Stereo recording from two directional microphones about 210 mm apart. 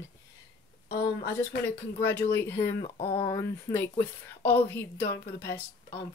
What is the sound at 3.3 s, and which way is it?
Speech, 15° left (ahead or behind).